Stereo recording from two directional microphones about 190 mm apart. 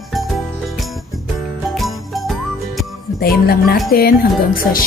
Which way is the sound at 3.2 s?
55° left (ahead or behind).